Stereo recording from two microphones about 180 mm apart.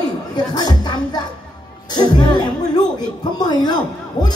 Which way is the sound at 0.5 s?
20° left (ahead or behind).